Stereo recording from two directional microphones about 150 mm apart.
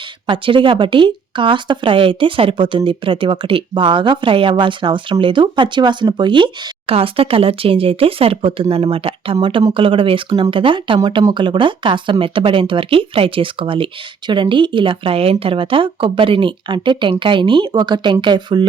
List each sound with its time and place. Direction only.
0.3 s speech: 35° right (ahead or behind)